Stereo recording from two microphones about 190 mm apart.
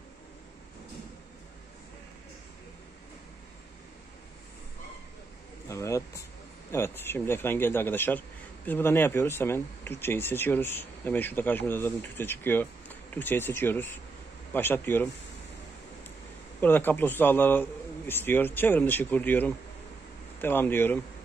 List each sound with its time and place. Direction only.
5.7 s a sound: 15° left (ahead or behind)
6.7 s speech: 15° left (ahead or behind)
16.6 s speech: 10° left (ahead or behind)